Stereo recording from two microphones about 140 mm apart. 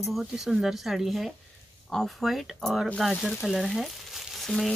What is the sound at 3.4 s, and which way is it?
Frying, centre (ahead or behind).